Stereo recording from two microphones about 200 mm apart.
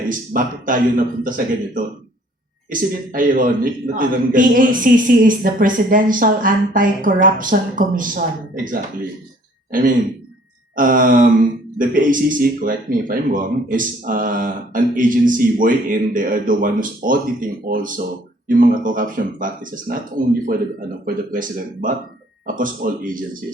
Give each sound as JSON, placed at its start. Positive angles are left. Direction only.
{"t": 0.1, "sound": "speech", "side_deg": -45}
{"t": 2.6, "sound": "speech", "side_deg": -45}
{"t": 10.8, "sound": "speech", "side_deg": -45}